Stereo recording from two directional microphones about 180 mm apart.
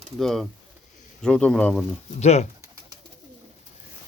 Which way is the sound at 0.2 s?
Centre (ahead or behind).